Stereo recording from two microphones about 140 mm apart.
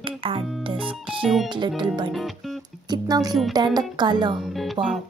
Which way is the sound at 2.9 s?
30° right (ahead or behind).